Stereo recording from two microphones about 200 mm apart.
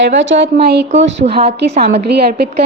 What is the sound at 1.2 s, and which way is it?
Speech, 30° right (ahead or behind).